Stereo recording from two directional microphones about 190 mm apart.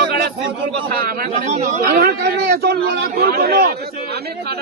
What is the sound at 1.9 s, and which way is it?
A man's voice, 55° right (ahead or behind).